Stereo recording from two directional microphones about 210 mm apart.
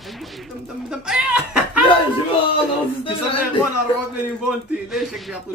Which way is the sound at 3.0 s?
25° left (ahead or behind).